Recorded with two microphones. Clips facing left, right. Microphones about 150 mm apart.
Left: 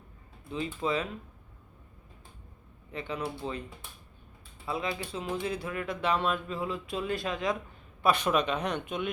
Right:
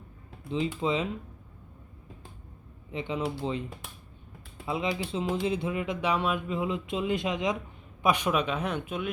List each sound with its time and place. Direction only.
0.8 s speech: 20° right (ahead or behind)
2.9 s speech: 20° right (ahead or behind)
4.6 s speech: 20° right (ahead or behind); by 9.0 s 5° right (ahead or behind)